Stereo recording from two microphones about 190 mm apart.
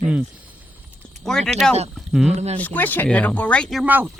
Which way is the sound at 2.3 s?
35° right (ahead or behind).